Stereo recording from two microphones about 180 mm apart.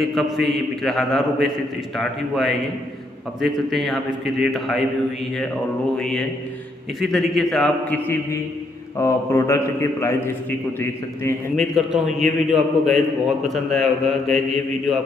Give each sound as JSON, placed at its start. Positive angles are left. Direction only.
{"t": 0.0, "sound": "a man's voice", "side_deg": 0}
{"t": 5.9, "sound": "a man's voice", "side_deg": 5}
{"t": 8.9, "sound": "a man's voice", "side_deg": 15}
{"t": 11.5, "sound": "a man's voice", "side_deg": 0}